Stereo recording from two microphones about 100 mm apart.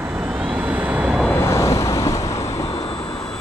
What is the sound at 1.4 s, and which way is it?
Vehicle, 30° left (ahead or behind).